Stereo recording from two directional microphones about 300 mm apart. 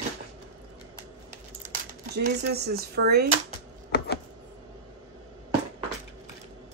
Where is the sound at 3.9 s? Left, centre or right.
Left.